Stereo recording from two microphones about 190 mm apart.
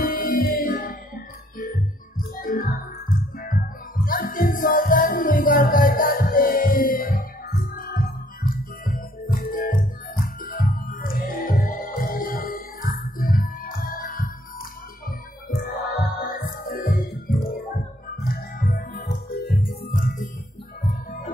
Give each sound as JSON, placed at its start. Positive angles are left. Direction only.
{"t": 0.0, "sound": "music", "side_deg": 50}